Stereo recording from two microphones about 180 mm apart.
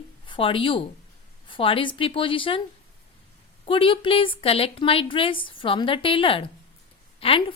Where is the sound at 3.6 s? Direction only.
30° left (ahead or behind).